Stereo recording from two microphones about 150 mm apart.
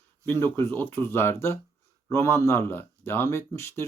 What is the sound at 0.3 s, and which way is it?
Speech, 15° left (ahead or behind).